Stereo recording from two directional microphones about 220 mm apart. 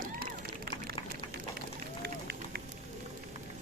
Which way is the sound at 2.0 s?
45° right (ahead or behind).